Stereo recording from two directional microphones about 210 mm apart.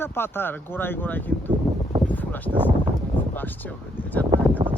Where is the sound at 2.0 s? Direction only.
10° left (ahead or behind).